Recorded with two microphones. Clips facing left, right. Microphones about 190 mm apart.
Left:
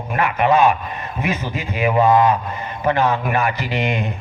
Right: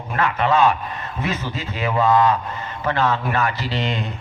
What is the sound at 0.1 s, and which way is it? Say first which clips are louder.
A man's voice: left 3 dB; 15° left (ahead or behind).